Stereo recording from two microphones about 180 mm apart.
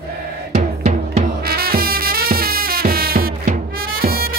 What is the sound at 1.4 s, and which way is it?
Music, 55° right (ahead or behind).